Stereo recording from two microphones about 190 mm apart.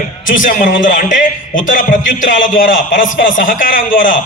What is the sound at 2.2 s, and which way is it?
Speech, 80° left.